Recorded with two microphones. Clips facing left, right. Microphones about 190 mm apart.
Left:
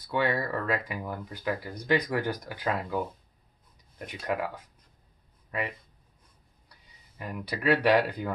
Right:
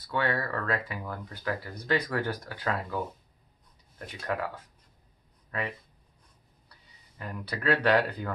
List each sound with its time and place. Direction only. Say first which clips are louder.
0.0 s speech: left 2 dB; 15° left (ahead or behind)
4.0 s speech: left 2 dB; 15° left (ahead or behind)
5.5 s speech: left 1 dB; 15° left (ahead or behind)
7.2 s speech: left 2 dB; 15° left (ahead or behind)